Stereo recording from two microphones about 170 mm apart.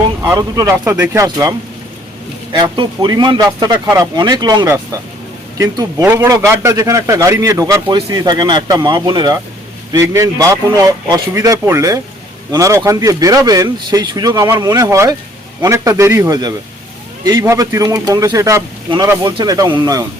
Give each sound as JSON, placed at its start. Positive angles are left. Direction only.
{"t": 0.2, "sound": "a man's voice", "side_deg": -20}